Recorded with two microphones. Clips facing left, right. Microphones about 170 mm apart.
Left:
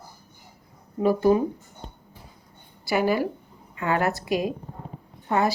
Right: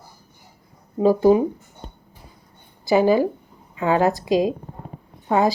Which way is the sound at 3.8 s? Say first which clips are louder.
Right 6 dB; 20° right (ahead or behind).